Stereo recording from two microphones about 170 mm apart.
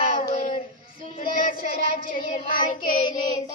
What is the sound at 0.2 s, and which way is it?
Child singing, 50° left (ahead or behind).